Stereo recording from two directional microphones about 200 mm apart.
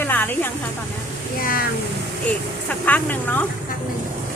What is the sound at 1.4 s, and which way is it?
Speech, 45° left (ahead or behind).